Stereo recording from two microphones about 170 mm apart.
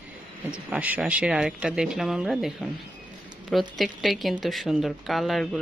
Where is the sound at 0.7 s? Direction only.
10° right (ahead or behind).